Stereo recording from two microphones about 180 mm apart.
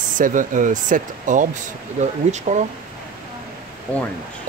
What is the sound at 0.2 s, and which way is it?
Speech, 45° right (ahead or behind).